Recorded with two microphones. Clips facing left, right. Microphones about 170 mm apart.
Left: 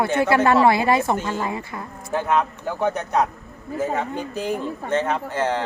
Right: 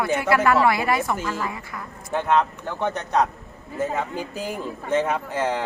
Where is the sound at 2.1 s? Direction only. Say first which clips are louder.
Even; 5° left (ahead or behind).